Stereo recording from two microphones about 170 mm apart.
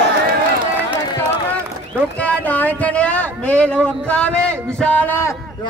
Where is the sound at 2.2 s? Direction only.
10° left (ahead or behind).